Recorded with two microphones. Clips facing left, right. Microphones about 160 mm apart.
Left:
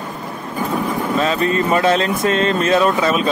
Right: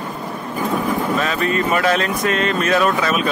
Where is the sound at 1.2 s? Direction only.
30° left (ahead or behind).